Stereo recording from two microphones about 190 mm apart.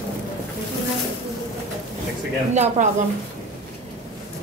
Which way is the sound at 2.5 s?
40° right (ahead or behind).